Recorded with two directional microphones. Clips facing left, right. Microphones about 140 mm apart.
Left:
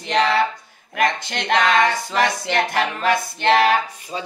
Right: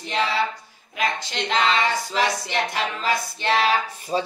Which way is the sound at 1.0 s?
70° left (ahead or behind).